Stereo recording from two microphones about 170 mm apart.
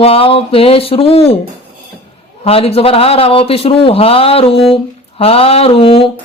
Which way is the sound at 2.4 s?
35° left (ahead or behind).